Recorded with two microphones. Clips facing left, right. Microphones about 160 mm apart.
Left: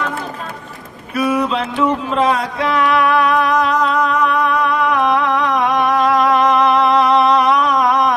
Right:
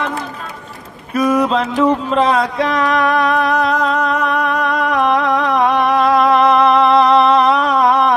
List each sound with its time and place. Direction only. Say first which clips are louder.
1.1 s mantra: right 3 dB; 35° right (ahead or behind)
2.3 s music: right 2 dB; 35° right (ahead or behind)
6.9 s a sound: right 2 dB; 35° right (ahead or behind)